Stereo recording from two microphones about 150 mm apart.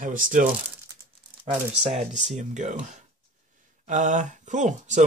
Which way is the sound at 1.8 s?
50° right (ahead or behind).